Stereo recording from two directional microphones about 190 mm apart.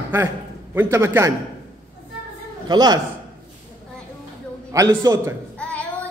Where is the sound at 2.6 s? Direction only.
20° right (ahead or behind).